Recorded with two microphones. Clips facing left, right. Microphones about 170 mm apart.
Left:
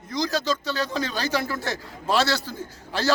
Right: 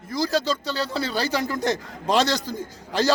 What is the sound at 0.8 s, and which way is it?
Speech, 15° left (ahead or behind).